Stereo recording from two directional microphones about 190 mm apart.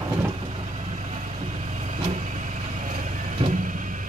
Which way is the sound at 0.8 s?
35° right (ahead or behind).